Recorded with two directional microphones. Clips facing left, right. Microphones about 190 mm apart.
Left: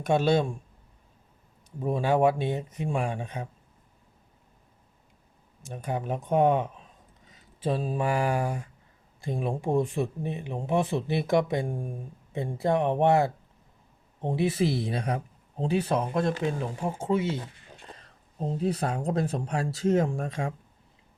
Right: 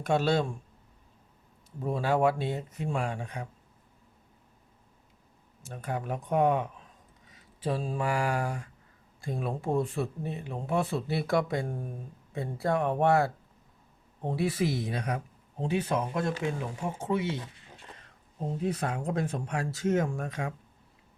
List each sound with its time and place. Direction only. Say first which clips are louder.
0.0 s speech: left 3 dB; 20° left (ahead or behind)
1.8 s speech: left 3 dB; 20° left (ahead or behind)
5.6 s speech: left 3 dB; 20° left (ahead or behind)